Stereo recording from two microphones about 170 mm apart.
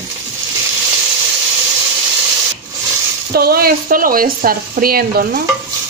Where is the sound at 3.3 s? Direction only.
65° right (ahead or behind).